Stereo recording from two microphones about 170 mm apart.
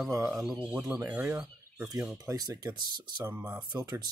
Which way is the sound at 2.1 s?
20° right (ahead or behind).